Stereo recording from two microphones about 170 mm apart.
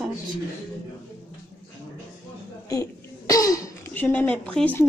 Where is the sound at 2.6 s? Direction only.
20° left (ahead or behind).